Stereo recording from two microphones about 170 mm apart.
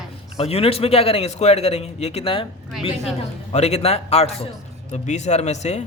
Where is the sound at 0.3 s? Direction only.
35° left (ahead or behind).